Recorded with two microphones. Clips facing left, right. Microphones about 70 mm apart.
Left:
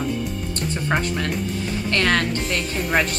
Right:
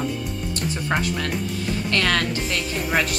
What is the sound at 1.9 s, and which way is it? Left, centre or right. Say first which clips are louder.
Speech: left 2 dB; centre.